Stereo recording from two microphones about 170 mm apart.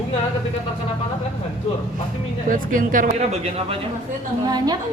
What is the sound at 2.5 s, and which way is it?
Speech, 50° right (ahead or behind).